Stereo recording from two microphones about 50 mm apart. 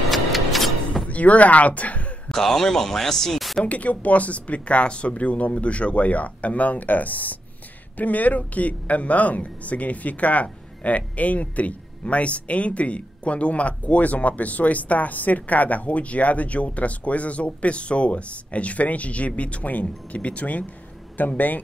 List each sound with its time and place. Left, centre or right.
0.1 s music: centre
1.0 s speech: left
2.2 s speech: centre
3.6 s a man's voice: left